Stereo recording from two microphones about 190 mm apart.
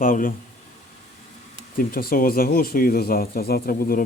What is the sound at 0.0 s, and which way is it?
Speech, 45° left (ahead or behind).